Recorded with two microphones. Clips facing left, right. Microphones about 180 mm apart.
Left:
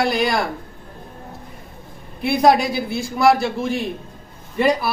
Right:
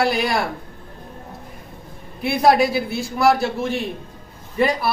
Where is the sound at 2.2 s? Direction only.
Centre (ahead or behind).